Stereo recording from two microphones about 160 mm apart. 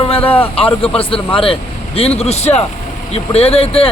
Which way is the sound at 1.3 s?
35° left (ahead or behind).